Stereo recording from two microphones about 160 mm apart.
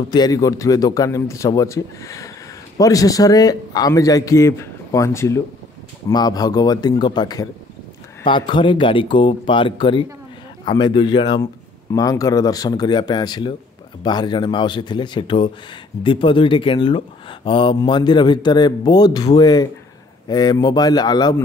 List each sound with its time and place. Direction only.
0.1 s speech: 25° left (ahead or behind)